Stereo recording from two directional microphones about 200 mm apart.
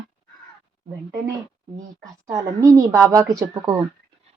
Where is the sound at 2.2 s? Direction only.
15° right (ahead or behind).